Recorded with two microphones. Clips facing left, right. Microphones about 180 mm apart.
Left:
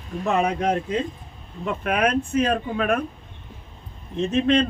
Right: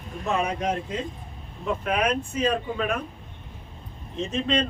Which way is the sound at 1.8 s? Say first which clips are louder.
Left 4 dB; 60° left (ahead or behind).